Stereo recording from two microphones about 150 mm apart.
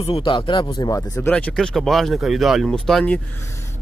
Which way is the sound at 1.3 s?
5° left (ahead or behind).